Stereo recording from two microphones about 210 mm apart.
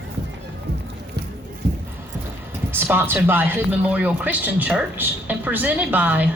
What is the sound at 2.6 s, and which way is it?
Speech, 10° right (ahead or behind).